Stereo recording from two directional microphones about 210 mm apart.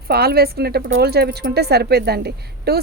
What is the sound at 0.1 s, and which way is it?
A woman's voice, 45° right (ahead or behind).